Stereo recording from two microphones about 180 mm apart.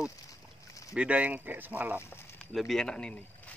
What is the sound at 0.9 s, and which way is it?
Speech, 5° right (ahead or behind).